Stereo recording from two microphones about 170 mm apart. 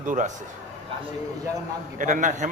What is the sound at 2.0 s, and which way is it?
Speech, 50° right (ahead or behind).